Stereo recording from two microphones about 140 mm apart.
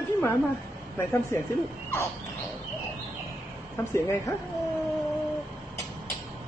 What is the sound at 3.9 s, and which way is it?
Speech, 20° left (ahead or behind).